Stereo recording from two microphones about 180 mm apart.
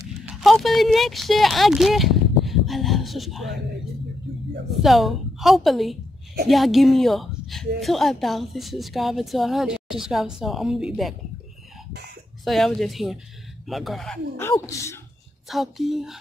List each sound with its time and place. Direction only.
0.2 s a sound: 5° right (ahead or behind)
4.8 s a woman's voice: centre (ahead or behind)
12.4 s a woman's voice: centre (ahead or behind)
14.4 s speech: 15° left (ahead or behind)
15.4 s a woman's voice: centre (ahead or behind)